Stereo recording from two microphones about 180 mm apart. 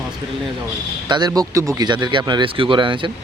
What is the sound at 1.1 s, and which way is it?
Speech, 20° right (ahead or behind).